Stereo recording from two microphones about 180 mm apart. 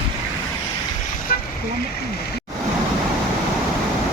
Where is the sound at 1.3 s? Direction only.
50° left (ahead or behind).